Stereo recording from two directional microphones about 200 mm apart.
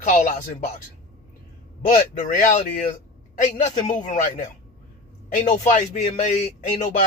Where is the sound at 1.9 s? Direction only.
40° left (ahead or behind).